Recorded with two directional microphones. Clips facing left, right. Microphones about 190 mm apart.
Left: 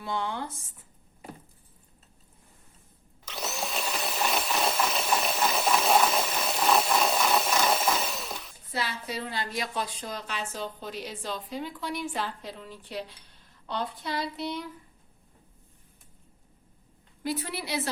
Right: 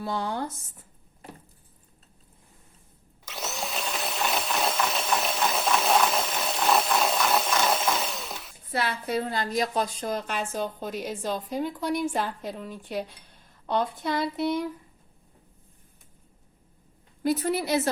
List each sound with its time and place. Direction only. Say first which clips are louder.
0.0 s speech: right 3 dB; 40° right (ahead or behind)
3.2 s a sound: even; centre (ahead or behind)
8.7 s a woman's voice: right 6 dB; 55° right (ahead or behind)
17.2 s a woman's voice: right 7 dB; 45° right (ahead or behind)